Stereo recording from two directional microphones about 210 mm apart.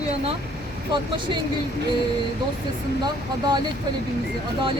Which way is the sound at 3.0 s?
20° right (ahead or behind).